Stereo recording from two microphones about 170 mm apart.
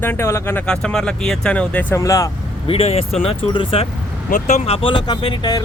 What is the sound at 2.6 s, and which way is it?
Speech, 35° left (ahead or behind).